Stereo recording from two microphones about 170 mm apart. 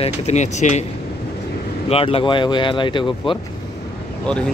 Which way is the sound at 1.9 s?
35° left (ahead or behind).